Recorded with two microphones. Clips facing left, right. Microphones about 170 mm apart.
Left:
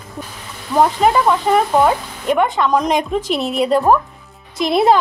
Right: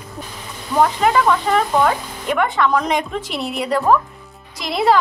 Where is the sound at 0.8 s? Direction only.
15° left (ahead or behind).